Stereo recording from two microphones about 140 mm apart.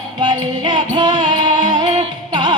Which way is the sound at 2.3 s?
30° right (ahead or behind).